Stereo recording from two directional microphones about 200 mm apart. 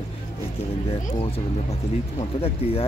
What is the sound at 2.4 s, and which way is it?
Speech, 30° left (ahead or behind).